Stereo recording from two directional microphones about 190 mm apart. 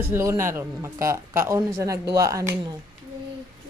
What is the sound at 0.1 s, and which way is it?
Speech, 15° right (ahead or behind).